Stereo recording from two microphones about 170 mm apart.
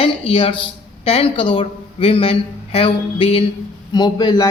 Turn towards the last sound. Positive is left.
turn(degrees=25)  # may be behind; listen again after turning